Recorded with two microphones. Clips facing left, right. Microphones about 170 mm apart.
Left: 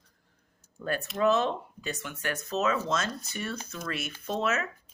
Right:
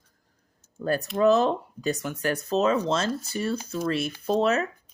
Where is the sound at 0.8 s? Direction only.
35° right (ahead or behind).